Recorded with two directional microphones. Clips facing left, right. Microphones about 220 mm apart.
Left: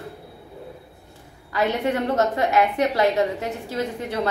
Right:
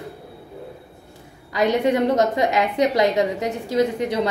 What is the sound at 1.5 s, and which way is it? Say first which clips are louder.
A woman's voice: right 4 dB; 15° right (ahead or behind).